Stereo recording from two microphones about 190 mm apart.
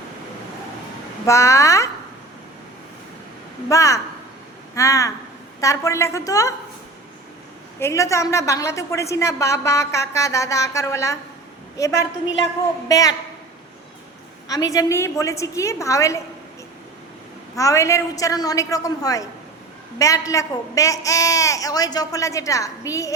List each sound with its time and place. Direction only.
1.3 s a woman's voice: 15° left (ahead or behind)
3.7 s a woman's voice: 15° left (ahead or behind)
4.7 s a sound: 15° left (ahead or behind)
5.5 s a woman's voice: 15° left (ahead or behind)
7.8 s a woman's voice: 15° left (ahead or behind)
12.9 s a woman's voice: 20° left (ahead or behind)
14.4 s a woman's voice: 20° left (ahead or behind)
17.5 s a woman's voice: 15° left (ahead or behind)